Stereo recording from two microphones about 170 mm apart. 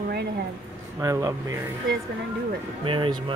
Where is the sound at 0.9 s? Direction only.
20° right (ahead or behind).